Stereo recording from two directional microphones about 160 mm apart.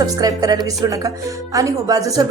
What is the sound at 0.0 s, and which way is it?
Speech, 25° right (ahead or behind).